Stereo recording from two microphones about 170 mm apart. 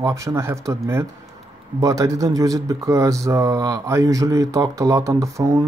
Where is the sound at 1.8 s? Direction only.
20° right (ahead or behind).